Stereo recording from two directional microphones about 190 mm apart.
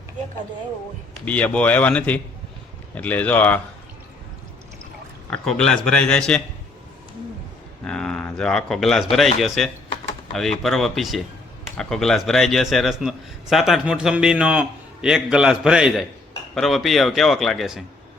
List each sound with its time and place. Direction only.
1.2 s speech: 5° left (ahead or behind)
5.3 s a man's voice: 5° left (ahead or behind)
7.9 s a man's voice: 5° left (ahead or behind)